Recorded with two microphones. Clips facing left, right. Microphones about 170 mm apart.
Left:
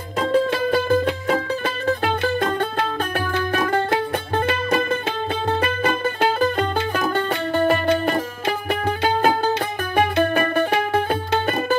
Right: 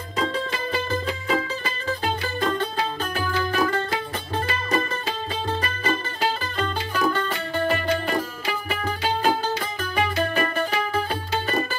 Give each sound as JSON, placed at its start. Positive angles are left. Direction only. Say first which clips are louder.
{"t": 0.2, "sound": "music", "louder": "left 8 dB", "side_deg": 55}
{"t": 5.6, "sound": "music", "louder": "left 5 dB", "side_deg": 55}
{"t": 9.9, "sound": "music", "louder": "left 5 dB", "side_deg": 55}